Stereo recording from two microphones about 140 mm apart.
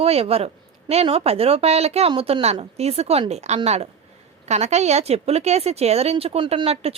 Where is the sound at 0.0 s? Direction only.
45° right (ahead or behind).